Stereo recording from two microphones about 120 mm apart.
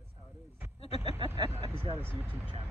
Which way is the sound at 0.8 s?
60° left (ahead or behind).